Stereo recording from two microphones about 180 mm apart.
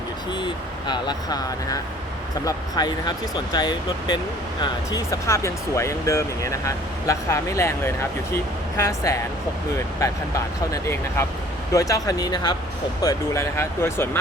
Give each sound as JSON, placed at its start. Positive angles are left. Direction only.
{"t": 0.3, "sound": "speech", "side_deg": 25}